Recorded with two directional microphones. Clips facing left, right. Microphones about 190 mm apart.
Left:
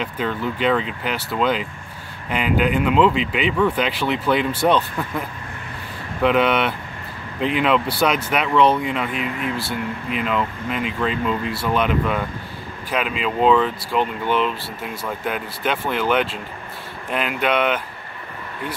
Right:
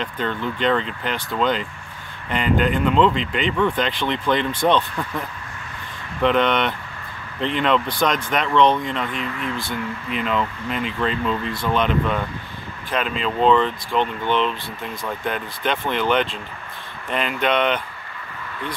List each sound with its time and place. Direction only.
0.0 s speech: 5° left (ahead or behind)
6.2 s speech: 5° left (ahead or behind)